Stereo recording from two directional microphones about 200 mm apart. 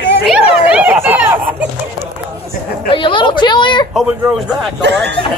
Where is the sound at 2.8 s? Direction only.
25° left (ahead or behind).